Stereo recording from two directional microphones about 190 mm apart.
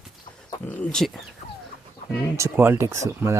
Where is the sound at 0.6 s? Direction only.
5° left (ahead or behind).